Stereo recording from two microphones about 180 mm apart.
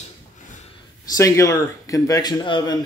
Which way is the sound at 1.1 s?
15° left (ahead or behind).